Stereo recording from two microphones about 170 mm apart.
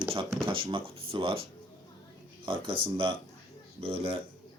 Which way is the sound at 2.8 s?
35° right (ahead or behind).